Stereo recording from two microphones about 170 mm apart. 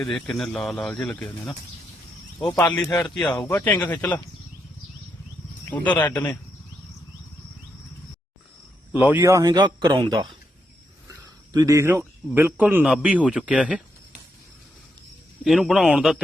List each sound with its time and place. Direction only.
0.0 s speech: centre (ahead or behind)
2.8 s speech: 15° left (ahead or behind)
5.7 s speech: 10° left (ahead or behind)
8.9 s a man's voice: 10° right (ahead or behind)
15.4 s speech: centre (ahead or behind)